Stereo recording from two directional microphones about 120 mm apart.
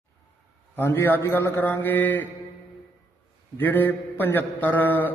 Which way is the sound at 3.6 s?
15° left (ahead or behind).